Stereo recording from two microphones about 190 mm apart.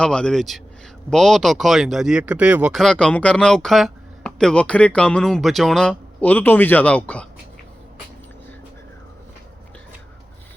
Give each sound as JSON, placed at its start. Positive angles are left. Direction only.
{"t": 0.0, "sound": "speech", "side_deg": 5}